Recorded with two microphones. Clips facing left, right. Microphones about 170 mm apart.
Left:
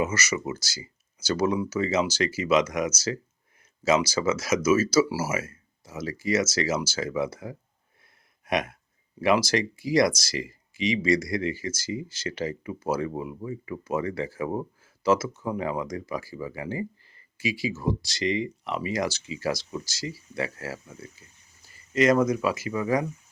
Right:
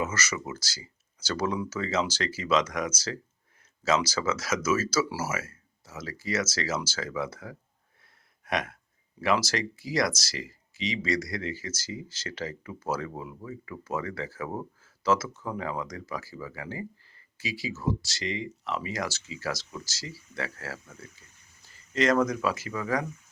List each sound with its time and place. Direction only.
0.0 s speech: 10° left (ahead or behind)
8.4 s a sound: 15° left (ahead or behind)
9.2 s speech: 15° left (ahead or behind)